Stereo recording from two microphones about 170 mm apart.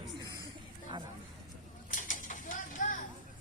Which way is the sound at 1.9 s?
50° left (ahead or behind).